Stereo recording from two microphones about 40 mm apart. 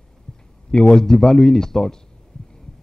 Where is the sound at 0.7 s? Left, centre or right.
Centre.